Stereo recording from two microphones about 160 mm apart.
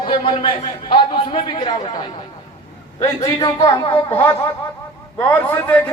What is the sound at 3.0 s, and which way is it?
Music, 25° left (ahead or behind).